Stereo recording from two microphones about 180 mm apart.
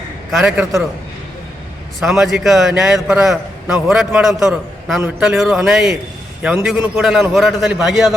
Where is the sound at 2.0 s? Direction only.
Centre (ahead or behind).